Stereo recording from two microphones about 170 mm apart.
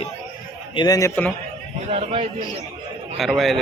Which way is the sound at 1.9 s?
35° right (ahead or behind).